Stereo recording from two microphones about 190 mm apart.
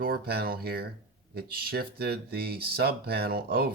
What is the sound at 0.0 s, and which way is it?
Speech, 55° right (ahead or behind).